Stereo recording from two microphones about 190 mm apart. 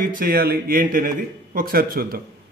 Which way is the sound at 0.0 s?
50° right (ahead or behind).